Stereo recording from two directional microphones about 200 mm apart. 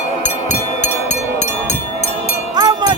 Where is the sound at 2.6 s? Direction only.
20° right (ahead or behind).